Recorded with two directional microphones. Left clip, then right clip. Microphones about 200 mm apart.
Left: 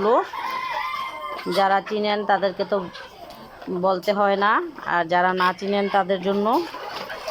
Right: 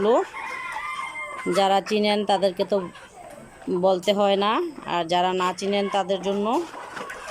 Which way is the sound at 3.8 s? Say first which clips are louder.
Even; 15° right (ahead or behind).